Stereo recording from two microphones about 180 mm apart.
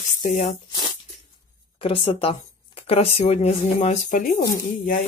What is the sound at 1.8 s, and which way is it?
A woman's voice, 30° left (ahead or behind).